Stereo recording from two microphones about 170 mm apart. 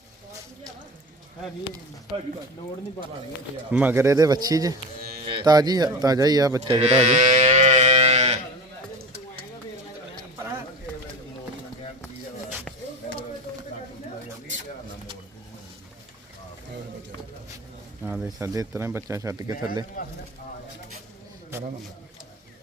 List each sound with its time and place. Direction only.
3.7 s a man's voice: 10° right (ahead or behind); by 8.4 s 40° right (ahead or behind)
18.0 s a sound: 10° right (ahead or behind)
18.3 s a man's voice: 20° right (ahead or behind)